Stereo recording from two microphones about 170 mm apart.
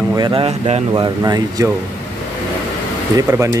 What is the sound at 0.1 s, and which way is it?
Speech, 30° right (ahead or behind).